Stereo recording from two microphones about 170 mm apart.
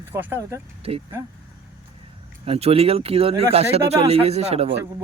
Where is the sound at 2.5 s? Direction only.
35° right (ahead or behind).